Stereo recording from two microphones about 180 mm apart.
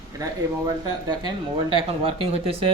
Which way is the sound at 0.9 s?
25° right (ahead or behind).